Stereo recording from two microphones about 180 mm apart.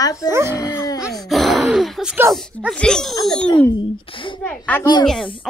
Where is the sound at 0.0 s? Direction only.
20° left (ahead or behind).